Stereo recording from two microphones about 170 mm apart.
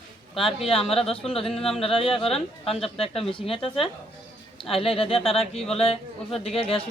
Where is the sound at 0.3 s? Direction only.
30° left (ahead or behind).